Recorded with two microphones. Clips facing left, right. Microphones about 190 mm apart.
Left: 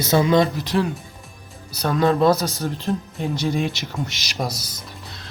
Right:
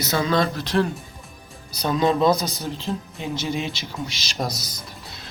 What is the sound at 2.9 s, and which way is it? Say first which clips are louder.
Speech: left 4 dB; centre (ahead or behind).